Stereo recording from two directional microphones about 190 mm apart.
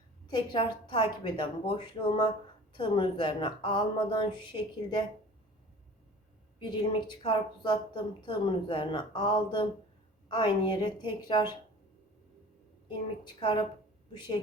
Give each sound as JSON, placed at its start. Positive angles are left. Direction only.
{"t": 0.3, "sound": "a woman's voice", "side_deg": 25}
{"t": 6.6, "sound": "a woman's voice", "side_deg": 25}
{"t": 13.2, "sound": "a woman's voice", "side_deg": 25}